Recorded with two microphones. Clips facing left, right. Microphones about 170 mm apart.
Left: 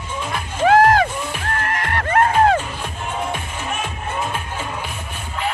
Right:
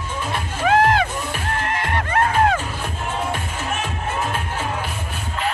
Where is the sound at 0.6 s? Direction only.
40° left (ahead or behind).